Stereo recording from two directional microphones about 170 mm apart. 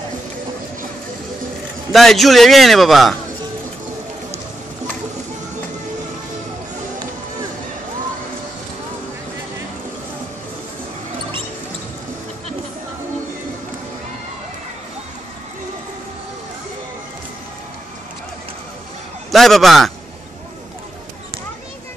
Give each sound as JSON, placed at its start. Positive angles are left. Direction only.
{"t": 1.9, "sound": "a man's voice", "side_deg": 0}
{"t": 19.3, "sound": "a man's voice", "side_deg": 0}